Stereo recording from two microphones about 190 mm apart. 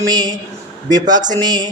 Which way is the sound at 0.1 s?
20° right (ahead or behind).